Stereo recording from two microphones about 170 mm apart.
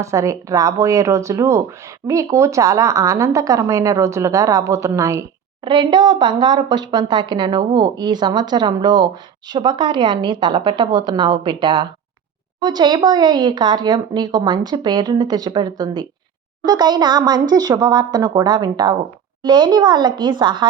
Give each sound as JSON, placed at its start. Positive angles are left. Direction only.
{"t": 0.0, "sound": "speech", "side_deg": -20}